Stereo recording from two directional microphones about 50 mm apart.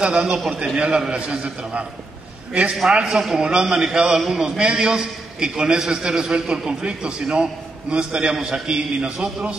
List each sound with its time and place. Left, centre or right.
0.0 s a man's voice: centre
2.9 s a man's voice: centre